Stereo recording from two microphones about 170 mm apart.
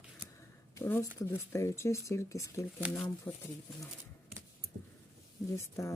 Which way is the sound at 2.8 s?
10° right (ahead or behind).